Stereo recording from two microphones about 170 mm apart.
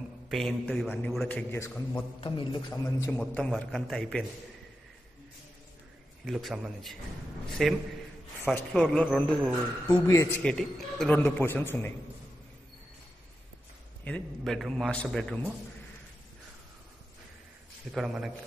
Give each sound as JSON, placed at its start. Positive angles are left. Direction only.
{"t": 0.3, "sound": "a man's voice", "side_deg": 0}
{"t": 2.1, "sound": "a man's voice", "side_deg": 30}
{"t": 2.7, "sound": "a man's voice", "side_deg": 15}
{"t": 3.2, "sound": "a man's voice", "side_deg": 5}
{"t": 6.2, "sound": "a man's voice", "side_deg": 0}
{"t": 10.0, "sound": "a man's voice", "side_deg": 15}
{"t": 14.0, "sound": "a man's voice", "side_deg": 5}
{"t": 17.9, "sound": "a man's voice", "side_deg": 0}